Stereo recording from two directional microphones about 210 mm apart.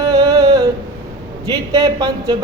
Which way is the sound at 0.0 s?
15° right (ahead or behind).